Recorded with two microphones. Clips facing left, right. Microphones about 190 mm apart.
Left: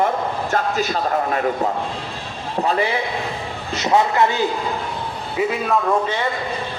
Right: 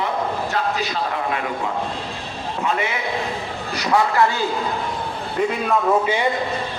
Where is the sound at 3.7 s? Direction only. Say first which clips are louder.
Left 2 dB; 25° left (ahead or behind).